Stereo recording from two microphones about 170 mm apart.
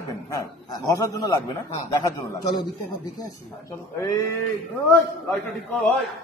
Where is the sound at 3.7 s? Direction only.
20° left (ahead or behind).